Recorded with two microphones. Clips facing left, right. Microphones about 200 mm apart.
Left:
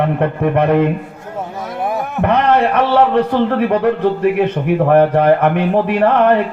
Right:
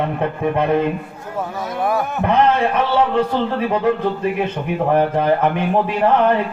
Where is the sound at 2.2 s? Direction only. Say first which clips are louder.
Left 3 dB; 65° left (ahead or behind).